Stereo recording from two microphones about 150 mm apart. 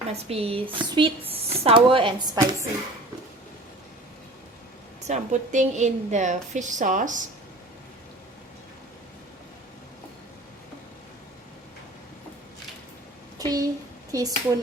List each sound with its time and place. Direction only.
0.1 s speech: 40° right (ahead or behind)
5.0 s a woman's voice: 50° right (ahead or behind)
13.4 s a child's voice: 25° right (ahead or behind)